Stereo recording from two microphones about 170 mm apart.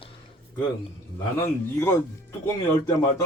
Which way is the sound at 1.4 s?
15° left (ahead or behind).